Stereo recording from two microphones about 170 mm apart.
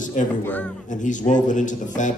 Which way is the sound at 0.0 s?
50° left (ahead or behind).